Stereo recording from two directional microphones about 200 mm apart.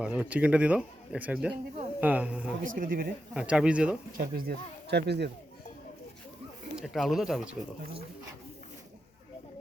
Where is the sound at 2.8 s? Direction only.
45° right (ahead or behind).